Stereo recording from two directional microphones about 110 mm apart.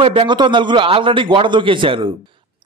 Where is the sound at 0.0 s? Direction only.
55° right (ahead or behind).